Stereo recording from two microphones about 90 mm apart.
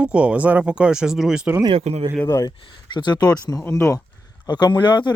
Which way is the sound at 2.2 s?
35° left (ahead or behind).